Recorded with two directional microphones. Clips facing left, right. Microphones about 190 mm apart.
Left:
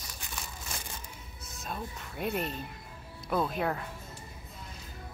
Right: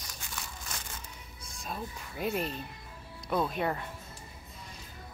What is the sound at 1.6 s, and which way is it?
Speech, centre (ahead or behind).